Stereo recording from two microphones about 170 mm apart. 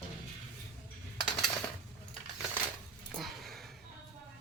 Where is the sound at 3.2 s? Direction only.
Centre (ahead or behind).